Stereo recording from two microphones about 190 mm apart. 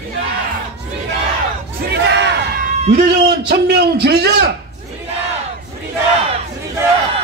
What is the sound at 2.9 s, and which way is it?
A man's voice, 60° right (ahead or behind).